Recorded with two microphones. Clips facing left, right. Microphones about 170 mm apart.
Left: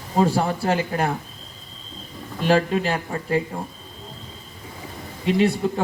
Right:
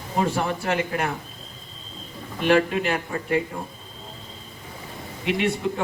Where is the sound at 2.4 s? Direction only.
35° left (ahead or behind).